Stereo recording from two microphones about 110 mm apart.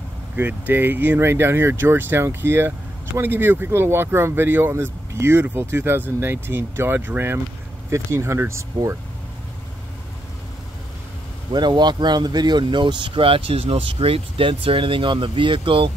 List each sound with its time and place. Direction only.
0.4 s speech: 20° right (ahead or behind)
11.5 s speech: 40° right (ahead or behind)